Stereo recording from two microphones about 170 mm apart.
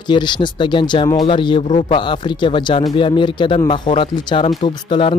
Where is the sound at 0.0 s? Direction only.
25° left (ahead or behind).